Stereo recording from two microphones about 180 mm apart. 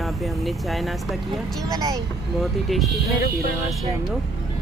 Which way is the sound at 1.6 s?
20° right (ahead or behind).